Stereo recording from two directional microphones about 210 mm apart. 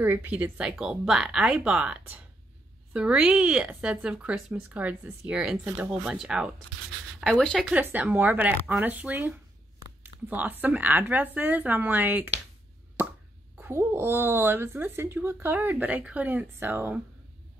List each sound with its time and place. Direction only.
0.0 s speech: 10° right (ahead or behind)
13.6 s speech: 10° right (ahead or behind)